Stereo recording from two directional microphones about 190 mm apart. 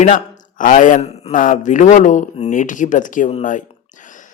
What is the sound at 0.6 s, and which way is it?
Speech, 45° left (ahead or behind).